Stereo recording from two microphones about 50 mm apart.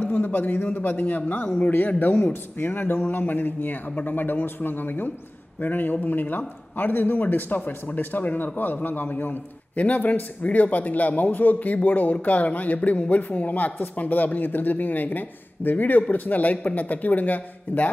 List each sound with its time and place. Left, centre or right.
0.0 s a man's voice: left
2.6 s a man's voice: left